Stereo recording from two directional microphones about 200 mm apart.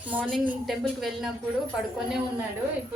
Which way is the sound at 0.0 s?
10° right (ahead or behind).